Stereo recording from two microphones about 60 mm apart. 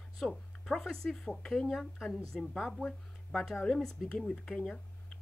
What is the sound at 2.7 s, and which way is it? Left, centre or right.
Speech, centre.